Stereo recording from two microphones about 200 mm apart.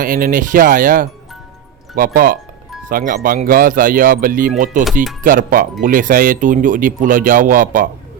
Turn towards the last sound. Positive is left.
turn(degrees=-40)  # may be behind; listen again after turning